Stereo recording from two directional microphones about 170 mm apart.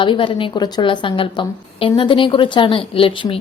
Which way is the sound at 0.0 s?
30° left (ahead or behind).